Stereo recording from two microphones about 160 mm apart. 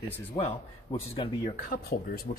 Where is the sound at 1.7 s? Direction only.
70° left (ahead or behind).